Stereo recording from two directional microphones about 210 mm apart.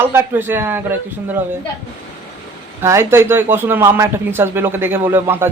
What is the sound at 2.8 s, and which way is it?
Speech, 10° right (ahead or behind).